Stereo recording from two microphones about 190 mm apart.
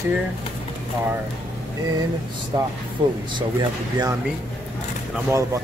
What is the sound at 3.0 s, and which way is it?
Speech, 25° right (ahead or behind).